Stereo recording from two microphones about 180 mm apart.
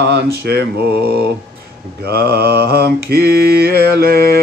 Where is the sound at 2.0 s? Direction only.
60° right (ahead or behind).